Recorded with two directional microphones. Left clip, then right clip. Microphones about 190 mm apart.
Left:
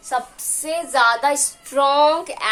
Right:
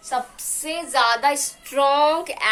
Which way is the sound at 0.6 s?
25° left (ahead or behind).